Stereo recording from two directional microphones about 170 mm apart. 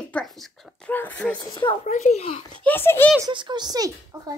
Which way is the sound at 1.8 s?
45° left (ahead or behind).